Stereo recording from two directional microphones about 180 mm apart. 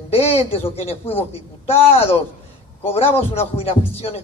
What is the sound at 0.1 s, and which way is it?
Speech, 35° left (ahead or behind).